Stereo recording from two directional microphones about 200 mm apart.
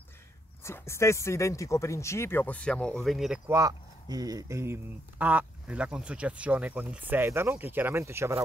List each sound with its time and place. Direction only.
0.7 s speech: 15° left (ahead or behind)
3.4 s speech: 15° right (ahead or behind)